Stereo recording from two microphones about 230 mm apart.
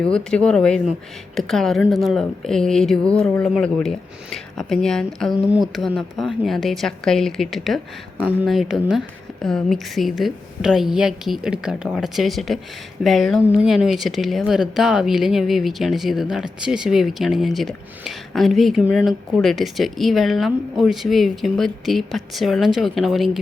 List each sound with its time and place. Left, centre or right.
0.0 s speech: centre